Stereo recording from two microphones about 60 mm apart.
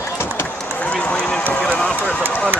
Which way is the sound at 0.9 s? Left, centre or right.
Centre.